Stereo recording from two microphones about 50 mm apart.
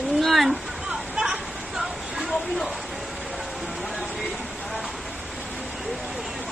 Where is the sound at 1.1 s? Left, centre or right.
Centre.